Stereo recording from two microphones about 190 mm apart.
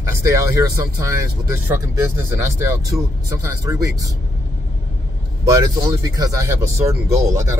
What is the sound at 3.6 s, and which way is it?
Speech, 15° right (ahead or behind).